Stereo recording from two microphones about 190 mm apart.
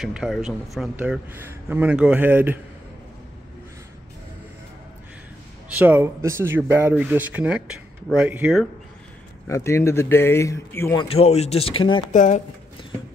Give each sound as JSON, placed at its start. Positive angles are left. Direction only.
{"t": 0.0, "sound": "a man's voice", "side_deg": 0}
{"t": 5.7, "sound": "a man's voice", "side_deg": -10}
{"t": 9.5, "sound": "speech", "side_deg": 15}
{"t": 11.0, "sound": "speech", "side_deg": 30}
{"t": 12.1, "sound": "speech", "side_deg": 40}